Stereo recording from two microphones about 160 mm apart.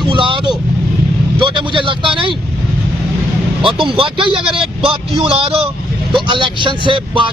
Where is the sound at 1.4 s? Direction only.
30° right (ahead or behind).